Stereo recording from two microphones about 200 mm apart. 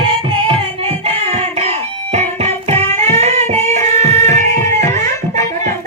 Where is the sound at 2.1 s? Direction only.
30° right (ahead or behind).